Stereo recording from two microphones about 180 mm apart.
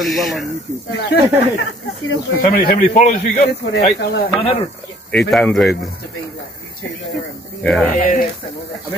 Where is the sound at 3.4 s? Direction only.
70° left (ahead or behind).